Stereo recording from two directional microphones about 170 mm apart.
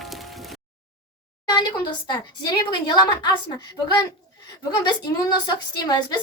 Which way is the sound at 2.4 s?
25° left (ahead or behind).